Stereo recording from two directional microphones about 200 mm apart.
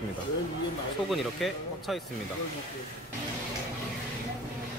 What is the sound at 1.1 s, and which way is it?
Speech, centre (ahead or behind).